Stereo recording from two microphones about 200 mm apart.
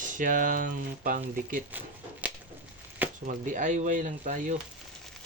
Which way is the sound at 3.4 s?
40° right (ahead or behind).